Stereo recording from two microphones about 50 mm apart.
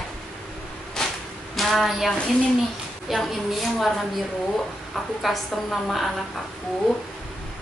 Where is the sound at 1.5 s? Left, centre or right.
Centre.